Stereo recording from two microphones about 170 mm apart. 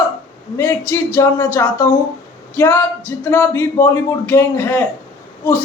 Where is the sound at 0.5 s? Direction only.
15° left (ahead or behind).